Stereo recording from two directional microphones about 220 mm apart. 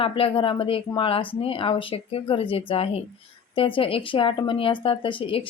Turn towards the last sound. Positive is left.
turn(degrees=25)  # may be behind; listen again after turning